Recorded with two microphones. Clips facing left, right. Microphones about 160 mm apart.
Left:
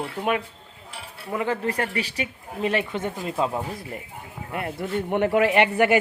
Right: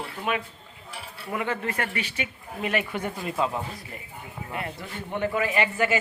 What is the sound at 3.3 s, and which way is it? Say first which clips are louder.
Speech: left 2 dB; 10° left (ahead or behind).